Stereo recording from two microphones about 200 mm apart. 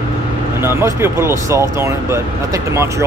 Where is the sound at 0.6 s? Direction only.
10° right (ahead or behind).